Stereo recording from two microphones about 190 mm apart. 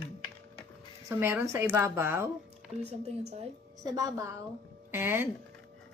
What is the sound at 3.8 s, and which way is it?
A woman's voice, 20° right (ahead or behind).